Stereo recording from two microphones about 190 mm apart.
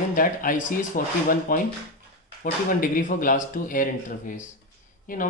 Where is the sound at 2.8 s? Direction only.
45° left (ahead or behind).